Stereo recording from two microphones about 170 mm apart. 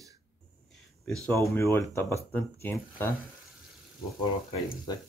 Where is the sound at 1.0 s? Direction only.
5° left (ahead or behind).